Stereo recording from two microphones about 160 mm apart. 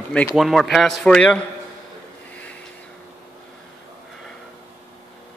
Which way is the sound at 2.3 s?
10° left (ahead or behind).